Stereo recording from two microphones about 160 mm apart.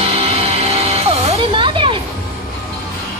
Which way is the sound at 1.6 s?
30° right (ahead or behind).